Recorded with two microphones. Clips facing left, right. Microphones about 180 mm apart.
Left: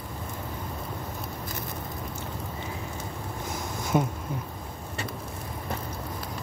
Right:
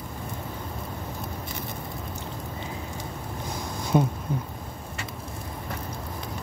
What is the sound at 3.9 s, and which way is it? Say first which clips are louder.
Speech: right 3 dB; 15° left (ahead or behind).